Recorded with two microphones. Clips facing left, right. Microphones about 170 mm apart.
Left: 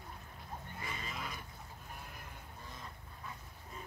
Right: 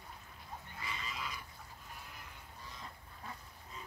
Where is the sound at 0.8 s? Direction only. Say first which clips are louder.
Right 1 dB; 50° left (ahead or behind).